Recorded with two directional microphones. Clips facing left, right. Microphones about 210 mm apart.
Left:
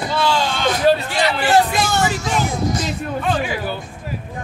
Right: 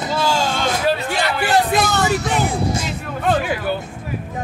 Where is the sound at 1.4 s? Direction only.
60° right (ahead or behind).